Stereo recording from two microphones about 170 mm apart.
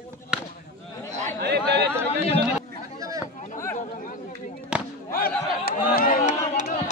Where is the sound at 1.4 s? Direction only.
75° right (ahead or behind).